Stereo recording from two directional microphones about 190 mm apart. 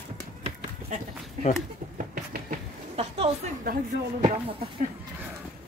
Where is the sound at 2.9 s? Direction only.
35° right (ahead or behind).